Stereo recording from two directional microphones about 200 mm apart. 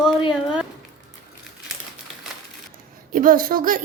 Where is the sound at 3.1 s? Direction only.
45° right (ahead or behind).